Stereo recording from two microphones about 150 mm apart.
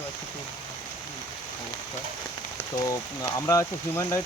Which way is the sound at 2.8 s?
25° left (ahead or behind).